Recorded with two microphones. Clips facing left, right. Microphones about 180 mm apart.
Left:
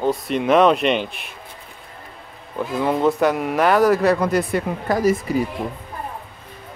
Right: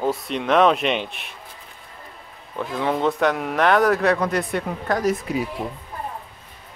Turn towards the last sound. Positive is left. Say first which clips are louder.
# left 4 dB
turn(degrees=0)  # may be behind; listen again after turning